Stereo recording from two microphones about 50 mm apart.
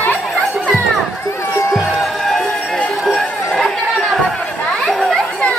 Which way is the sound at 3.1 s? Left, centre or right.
Centre.